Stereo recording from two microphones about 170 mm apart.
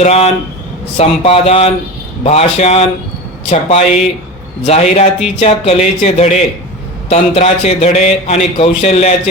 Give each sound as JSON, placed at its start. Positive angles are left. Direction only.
{"t": 0.0, "sound": "speech", "side_deg": 40}